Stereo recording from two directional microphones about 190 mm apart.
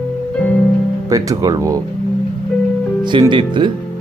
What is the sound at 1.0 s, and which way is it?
Speech, 20° right (ahead or behind).